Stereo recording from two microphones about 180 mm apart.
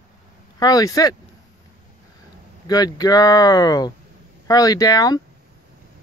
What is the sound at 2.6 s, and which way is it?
Speech, 20° left (ahead or behind).